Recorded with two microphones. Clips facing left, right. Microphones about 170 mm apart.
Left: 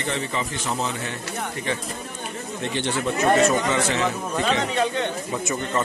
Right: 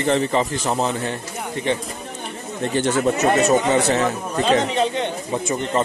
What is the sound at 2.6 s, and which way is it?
Speech, 45° right (ahead or behind).